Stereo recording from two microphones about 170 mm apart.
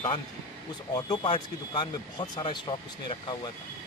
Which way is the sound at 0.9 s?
25° left (ahead or behind).